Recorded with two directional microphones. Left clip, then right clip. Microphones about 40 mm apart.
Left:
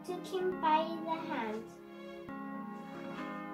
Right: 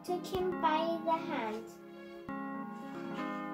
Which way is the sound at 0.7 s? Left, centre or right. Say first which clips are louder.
Left 1 dB; left.